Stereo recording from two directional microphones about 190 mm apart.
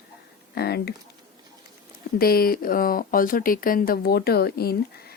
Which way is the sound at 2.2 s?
50° left (ahead or behind).